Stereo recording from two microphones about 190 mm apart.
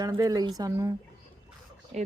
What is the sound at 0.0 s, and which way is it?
Speech, 20° right (ahead or behind).